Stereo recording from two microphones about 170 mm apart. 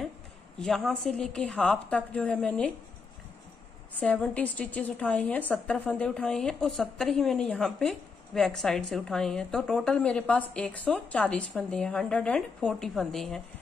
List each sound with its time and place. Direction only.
0.6 s a woman's voice: centre (ahead or behind)
3.9 s a woman's voice: 10° left (ahead or behind)